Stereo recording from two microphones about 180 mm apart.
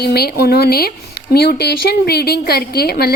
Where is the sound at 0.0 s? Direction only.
60° left (ahead or behind).